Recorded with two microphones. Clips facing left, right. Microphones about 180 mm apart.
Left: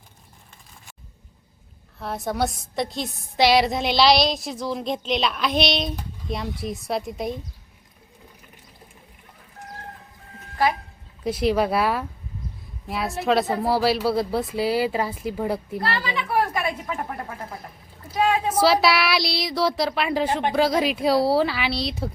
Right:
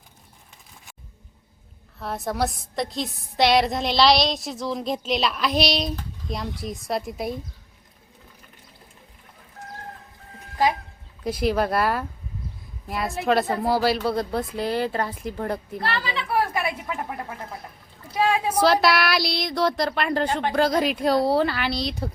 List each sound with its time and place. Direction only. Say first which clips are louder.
2.0 s a woman's voice: left 1 dB; centre (ahead or behind)
11.2 s a woman's voice: left 2 dB; centre (ahead or behind)
18.5 s a woman's voice: even; 5° left (ahead or behind)
20.2 s speech: left 1 dB; 25° left (ahead or behind)
20.5 s a woman's voice: even; 5° left (ahead or behind)